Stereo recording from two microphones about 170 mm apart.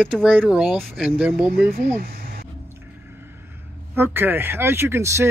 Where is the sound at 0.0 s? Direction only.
10° right (ahead or behind).